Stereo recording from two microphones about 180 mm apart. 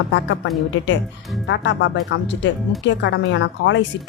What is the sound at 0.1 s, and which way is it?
A woman's voice, 90° left.